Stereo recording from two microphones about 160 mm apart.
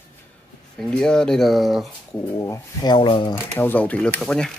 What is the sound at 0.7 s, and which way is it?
Speech, 5° left (ahead or behind).